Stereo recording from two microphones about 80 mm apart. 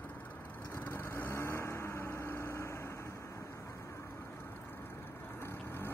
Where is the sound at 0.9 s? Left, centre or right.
Left.